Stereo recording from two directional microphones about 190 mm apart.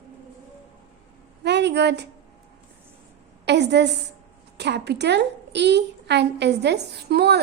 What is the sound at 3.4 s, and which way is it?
A woman's voice, 65° right (ahead or behind).